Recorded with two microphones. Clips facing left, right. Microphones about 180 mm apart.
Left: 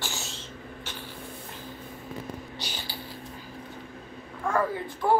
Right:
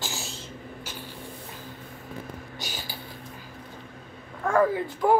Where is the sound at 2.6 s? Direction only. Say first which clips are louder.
Right 1 dB; 45° right (ahead or behind).